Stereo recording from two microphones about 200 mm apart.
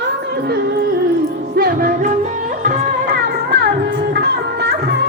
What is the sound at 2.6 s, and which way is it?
Music, 50° right (ahead or behind).